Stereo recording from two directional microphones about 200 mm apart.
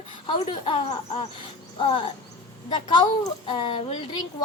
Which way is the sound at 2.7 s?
20° left (ahead or behind).